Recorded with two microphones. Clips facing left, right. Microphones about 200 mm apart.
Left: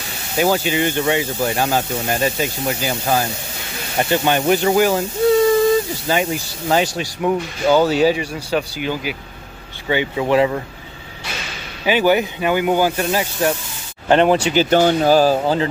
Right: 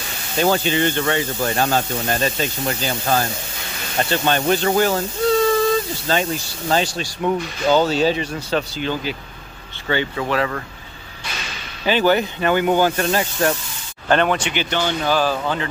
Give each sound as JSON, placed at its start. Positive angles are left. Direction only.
{"t": 0.4, "sound": "speech", "side_deg": 10}
{"t": 6.0, "sound": "speech", "side_deg": 15}
{"t": 11.8, "sound": "speech", "side_deg": 10}
{"t": 14.0, "sound": "speech", "side_deg": 25}